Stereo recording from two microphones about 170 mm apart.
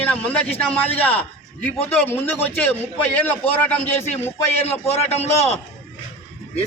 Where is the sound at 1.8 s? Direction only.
40° left (ahead or behind).